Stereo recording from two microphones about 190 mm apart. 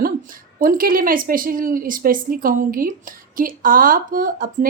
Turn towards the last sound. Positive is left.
turn(degrees=-45)  # may be behind; listen again after turning